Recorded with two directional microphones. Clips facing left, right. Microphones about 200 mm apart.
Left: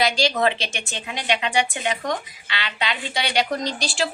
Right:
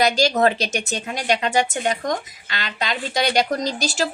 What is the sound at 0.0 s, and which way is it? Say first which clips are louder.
A woman's voice: right 3 dB; 45° right (ahead or behind).